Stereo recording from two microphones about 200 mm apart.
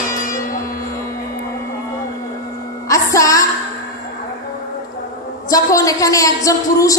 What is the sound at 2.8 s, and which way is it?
Music, 15° left (ahead or behind).